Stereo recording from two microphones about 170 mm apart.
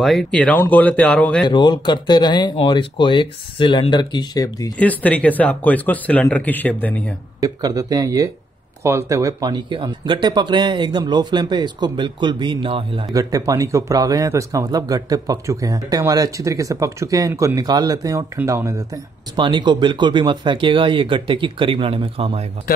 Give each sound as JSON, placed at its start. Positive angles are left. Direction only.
{"t": 0.0, "sound": "speech", "side_deg": 0}
{"t": 1.5, "sound": "speech", "side_deg": 25}
{"t": 4.7, "sound": "speech", "side_deg": 10}
{"t": 7.3, "sound": "speech", "side_deg": -20}